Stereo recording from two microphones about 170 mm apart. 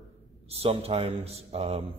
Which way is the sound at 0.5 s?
35° right (ahead or behind).